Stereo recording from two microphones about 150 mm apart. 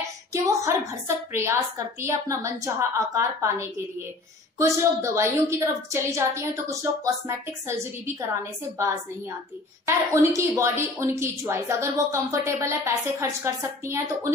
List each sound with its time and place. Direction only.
0.3 s speech: 20° right (ahead or behind)
9.8 s speech: 20° right (ahead or behind)